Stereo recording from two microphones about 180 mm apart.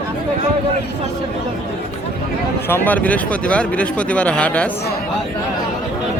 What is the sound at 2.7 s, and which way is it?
Speech, 10° left (ahead or behind).